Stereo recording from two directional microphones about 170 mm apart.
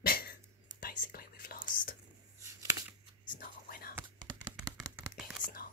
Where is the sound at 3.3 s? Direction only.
60° left (ahead or behind).